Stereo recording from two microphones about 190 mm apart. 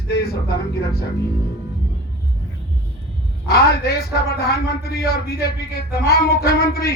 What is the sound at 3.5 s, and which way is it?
A man's voice, 55° left (ahead or behind).